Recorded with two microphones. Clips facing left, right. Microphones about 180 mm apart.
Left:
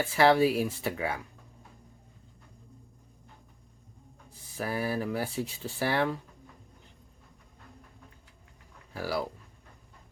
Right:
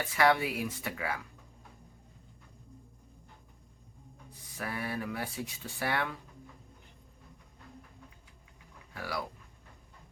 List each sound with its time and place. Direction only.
0.0 s speech: 30° left (ahead or behind)
4.3 s speech: 25° left (ahead or behind)
8.9 s speech: 30° left (ahead or behind)